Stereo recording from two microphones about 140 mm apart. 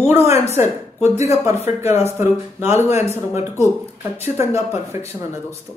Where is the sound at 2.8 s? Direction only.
50° left (ahead or behind).